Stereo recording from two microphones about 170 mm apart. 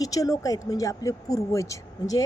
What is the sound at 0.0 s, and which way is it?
Speech, 20° left (ahead or behind).